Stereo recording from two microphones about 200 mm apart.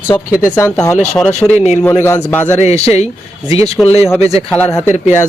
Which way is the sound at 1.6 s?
35° left (ahead or behind).